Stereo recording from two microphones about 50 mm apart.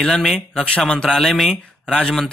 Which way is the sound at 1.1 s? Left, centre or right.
Centre.